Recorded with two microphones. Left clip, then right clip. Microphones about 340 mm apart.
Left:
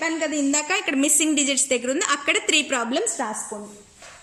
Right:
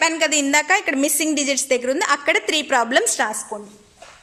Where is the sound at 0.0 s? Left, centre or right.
Right.